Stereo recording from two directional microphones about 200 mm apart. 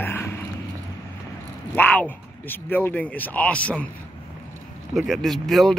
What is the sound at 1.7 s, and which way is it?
Speech, 10° left (ahead or behind).